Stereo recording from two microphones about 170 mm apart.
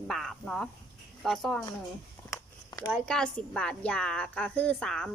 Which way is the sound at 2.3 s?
20° left (ahead or behind).